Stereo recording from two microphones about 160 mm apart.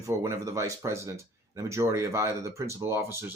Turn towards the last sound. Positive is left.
turn(degrees=-15)  # may be behind; listen again after turning